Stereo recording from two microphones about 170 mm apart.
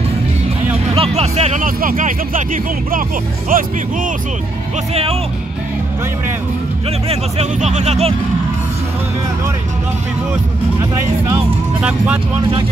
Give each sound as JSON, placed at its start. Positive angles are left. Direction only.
{"t": 0.9, "sound": "speech", "side_deg": -35}
{"t": 1.8, "sound": "speech", "side_deg": -50}
{"t": 7.1, "sound": "speech", "side_deg": -40}